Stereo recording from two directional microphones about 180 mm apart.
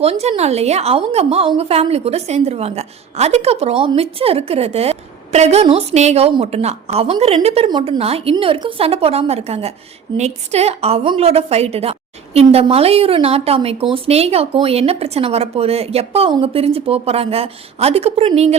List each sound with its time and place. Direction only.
0.0 s a woman's voice: 35° right (ahead or behind)